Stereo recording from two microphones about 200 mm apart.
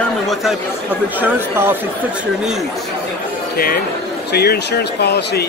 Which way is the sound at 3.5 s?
50° left (ahead or behind).